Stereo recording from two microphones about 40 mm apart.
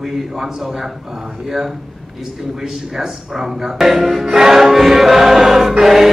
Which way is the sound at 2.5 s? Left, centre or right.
Centre.